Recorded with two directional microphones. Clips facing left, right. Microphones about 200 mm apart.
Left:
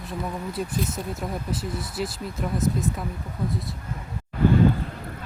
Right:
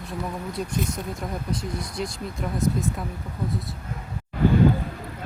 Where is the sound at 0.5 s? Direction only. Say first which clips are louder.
Right 1 dB; 5° left (ahead or behind).